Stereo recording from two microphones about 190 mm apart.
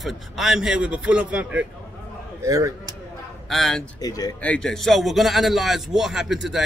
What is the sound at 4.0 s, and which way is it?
Speech, 20° left (ahead or behind).